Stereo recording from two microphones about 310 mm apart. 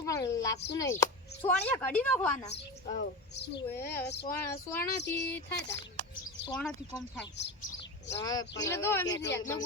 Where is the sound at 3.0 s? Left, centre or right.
Left.